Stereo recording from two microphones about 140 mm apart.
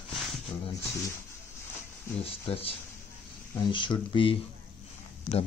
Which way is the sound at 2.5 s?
45° left (ahead or behind).